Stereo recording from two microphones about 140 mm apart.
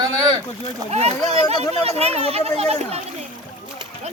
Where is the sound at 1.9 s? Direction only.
50° right (ahead or behind).